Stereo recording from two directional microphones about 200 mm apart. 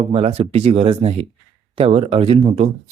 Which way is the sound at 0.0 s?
30° right (ahead or behind).